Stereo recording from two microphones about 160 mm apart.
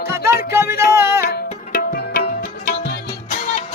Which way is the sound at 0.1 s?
15° right (ahead or behind).